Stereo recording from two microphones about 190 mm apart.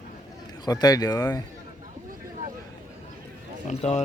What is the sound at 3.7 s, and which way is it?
Speech, 35° left (ahead or behind).